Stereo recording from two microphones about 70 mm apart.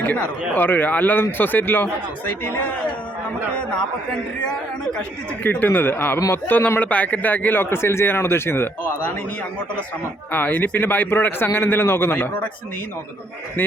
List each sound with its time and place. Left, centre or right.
0.0 s a man's voice: left
3.6 s a man's voice: centre
5.4 s a man's voice: left
10.3 s speech: left
13.6 s speech: left